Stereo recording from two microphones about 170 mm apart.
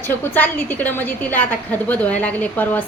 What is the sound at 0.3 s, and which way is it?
A woman's voice, 10° left (ahead or behind).